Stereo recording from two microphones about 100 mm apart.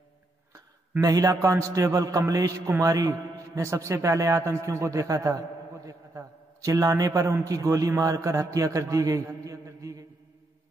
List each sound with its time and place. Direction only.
1.0 s a man's voice: 40° right (ahead or behind)